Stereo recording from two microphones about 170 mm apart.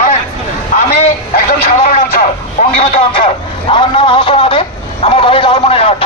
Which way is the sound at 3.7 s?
30° left (ahead or behind).